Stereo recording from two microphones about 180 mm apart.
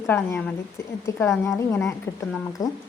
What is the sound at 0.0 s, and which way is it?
A woman's voice, 15° left (ahead or behind).